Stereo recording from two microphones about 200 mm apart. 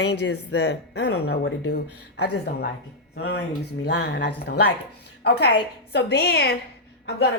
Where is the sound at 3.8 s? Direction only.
55° left (ahead or behind).